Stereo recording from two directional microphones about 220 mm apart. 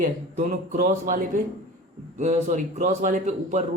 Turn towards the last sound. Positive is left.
turn(degrees=-30)  # may be behind; listen again after turning